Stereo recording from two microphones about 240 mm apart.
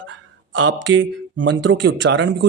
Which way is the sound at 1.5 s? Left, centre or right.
Right.